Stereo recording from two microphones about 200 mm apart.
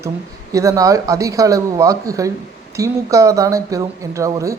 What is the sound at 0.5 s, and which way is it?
A man's voice, 15° right (ahead or behind).